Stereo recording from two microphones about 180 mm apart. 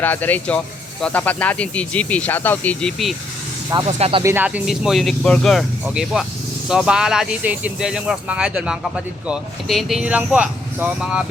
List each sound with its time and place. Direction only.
0.0 s speech: 10° left (ahead or behind)
3.8 s speech: 35° right (ahead or behind)
4.2 s speech: 15° right (ahead or behind)